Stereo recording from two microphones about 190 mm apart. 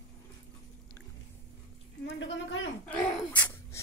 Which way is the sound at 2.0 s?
75° left (ahead or behind).